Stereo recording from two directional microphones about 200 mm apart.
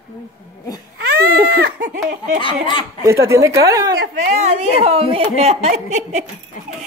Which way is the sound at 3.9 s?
50° right (ahead or behind).